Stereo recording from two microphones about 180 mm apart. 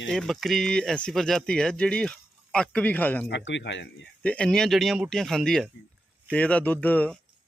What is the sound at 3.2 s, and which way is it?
Speech, 80° left.